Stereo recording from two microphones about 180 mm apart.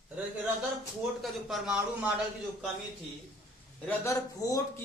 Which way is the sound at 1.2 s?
Centre (ahead or behind).